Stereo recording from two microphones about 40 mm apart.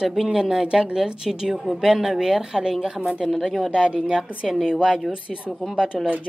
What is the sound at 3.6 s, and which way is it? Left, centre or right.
A woman's voice, right.